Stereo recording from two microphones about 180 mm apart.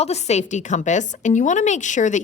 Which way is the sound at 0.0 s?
35° left (ahead or behind).